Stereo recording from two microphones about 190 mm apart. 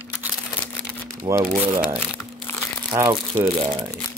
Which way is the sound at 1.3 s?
15° right (ahead or behind).